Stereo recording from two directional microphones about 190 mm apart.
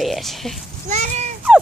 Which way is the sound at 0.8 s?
40° right (ahead or behind).